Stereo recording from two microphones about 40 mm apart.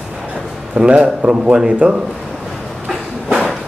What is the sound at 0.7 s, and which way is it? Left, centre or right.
Speech, right.